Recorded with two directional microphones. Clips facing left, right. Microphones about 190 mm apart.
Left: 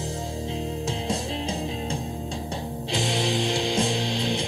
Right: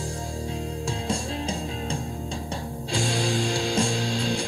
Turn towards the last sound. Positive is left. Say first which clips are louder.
# even
turn(degrees=20)  # may be behind; listen again after turning